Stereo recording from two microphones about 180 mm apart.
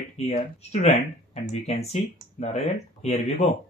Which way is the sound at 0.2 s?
35° left (ahead or behind).